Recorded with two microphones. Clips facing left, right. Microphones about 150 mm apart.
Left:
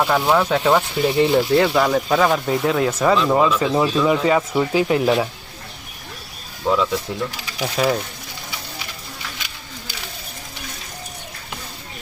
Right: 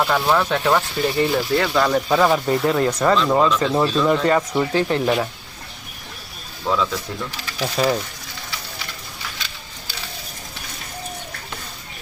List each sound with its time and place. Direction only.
0.0 s speech: 10° left (ahead or behind)
1.8 s speech: centre (ahead or behind)
6.7 s speech: 15° left (ahead or behind)
7.8 s speech: centre (ahead or behind)